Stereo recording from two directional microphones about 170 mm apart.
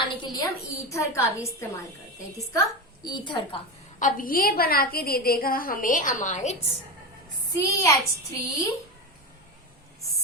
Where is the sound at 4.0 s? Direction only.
50° left (ahead or behind).